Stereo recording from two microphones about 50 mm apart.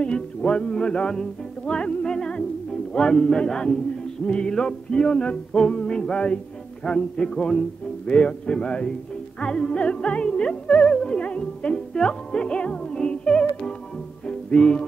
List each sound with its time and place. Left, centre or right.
0.0 s music: centre
2.9 s speech: centre
4.3 s music: centre